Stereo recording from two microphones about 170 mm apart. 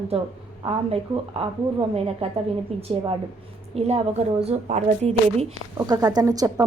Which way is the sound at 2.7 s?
40° right (ahead or behind).